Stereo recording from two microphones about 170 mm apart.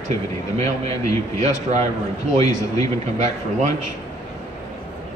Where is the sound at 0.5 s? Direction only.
40° right (ahead or behind).